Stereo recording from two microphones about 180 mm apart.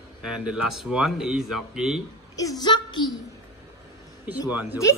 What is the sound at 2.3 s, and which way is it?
Speech, 20° left (ahead or behind).